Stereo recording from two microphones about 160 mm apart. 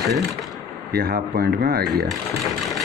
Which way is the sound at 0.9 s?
70° right (ahead or behind).